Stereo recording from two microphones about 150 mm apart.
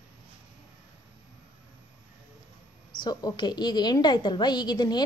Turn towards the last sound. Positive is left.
turn(degrees=30)  # may be behind; listen again after turning